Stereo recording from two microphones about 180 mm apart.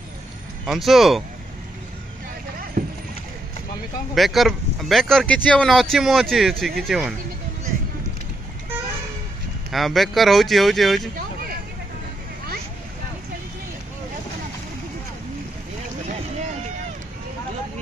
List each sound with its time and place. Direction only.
0.7 s speech: centre (ahead or behind)
2.8 s rowboat: 45° right (ahead or behind)
4.1 s speech: centre (ahead or behind)
9.7 s speech: centre (ahead or behind)